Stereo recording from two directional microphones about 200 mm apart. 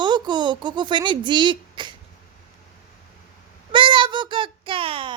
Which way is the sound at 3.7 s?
25° right (ahead or behind).